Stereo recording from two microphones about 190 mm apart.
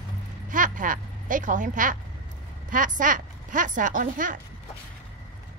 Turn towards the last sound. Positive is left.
turn(degrees=-45)  # may be behind; listen again after turning